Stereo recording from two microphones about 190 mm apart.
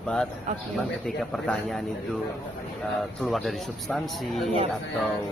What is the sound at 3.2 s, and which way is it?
Speech, centre (ahead or behind).